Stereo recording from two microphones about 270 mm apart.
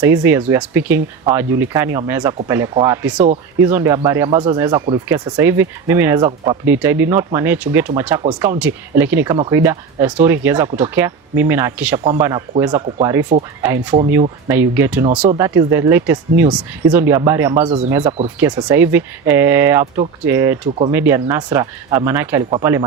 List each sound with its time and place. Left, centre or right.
0.0 s speech: centre
17.7 s speech: right
18.3 s speech: centre